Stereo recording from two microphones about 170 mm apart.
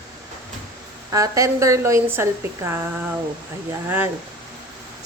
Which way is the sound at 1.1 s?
20° right (ahead or behind).